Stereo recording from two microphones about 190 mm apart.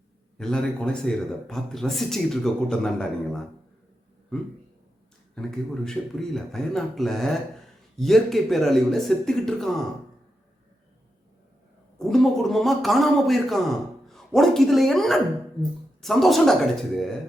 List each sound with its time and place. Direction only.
0.3 s speech: 5° left (ahead or behind)
5.3 s speech: centre (ahead or behind)
11.9 s speech: centre (ahead or behind)